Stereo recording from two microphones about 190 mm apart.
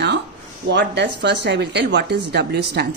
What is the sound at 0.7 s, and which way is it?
Speech, 65° right (ahead or behind).